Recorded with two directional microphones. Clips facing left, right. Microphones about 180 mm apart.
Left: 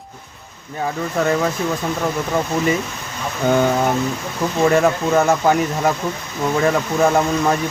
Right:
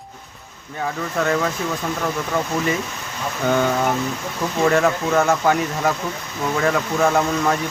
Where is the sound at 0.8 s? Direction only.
20° left (ahead or behind).